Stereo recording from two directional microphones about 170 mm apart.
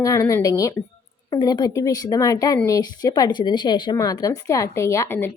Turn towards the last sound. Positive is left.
turn(degrees=15)  # may be behind; listen again after turning